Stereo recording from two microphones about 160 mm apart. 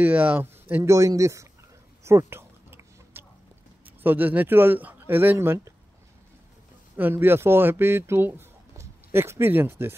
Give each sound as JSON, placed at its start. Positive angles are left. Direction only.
{"t": 0.0, "sound": "speech", "side_deg": -10}
{"t": 2.0, "sound": "chewing", "side_deg": -15}
{"t": 3.8, "sound": "speech", "side_deg": -10}
{"t": 7.0, "sound": "a man's voice", "side_deg": -15}